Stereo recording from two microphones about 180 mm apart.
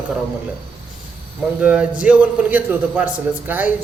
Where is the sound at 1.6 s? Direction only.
5° right (ahead or behind).